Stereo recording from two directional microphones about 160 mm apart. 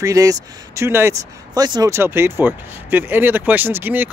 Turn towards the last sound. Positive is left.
turn(degrees=-10)  # may be behind; listen again after turning